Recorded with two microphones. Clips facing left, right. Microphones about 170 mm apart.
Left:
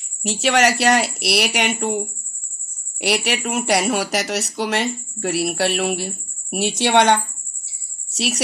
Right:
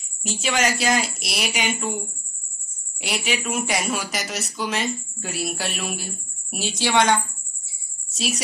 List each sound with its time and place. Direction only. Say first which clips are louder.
0.2 s a woman's voice: left 6 dB; 70° left (ahead or behind)
3.0 s a woman's voice: left 6 dB; 70° left (ahead or behind)
7.6 s a sound: even; 70° left (ahead or behind)